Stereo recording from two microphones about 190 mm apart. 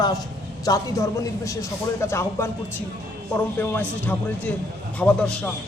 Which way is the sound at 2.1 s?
15° left (ahead or behind).